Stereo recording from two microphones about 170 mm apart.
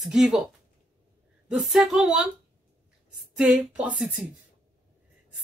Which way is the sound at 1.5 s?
5° right (ahead or behind).